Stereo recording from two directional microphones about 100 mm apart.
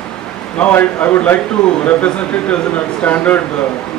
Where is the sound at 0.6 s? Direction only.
20° left (ahead or behind).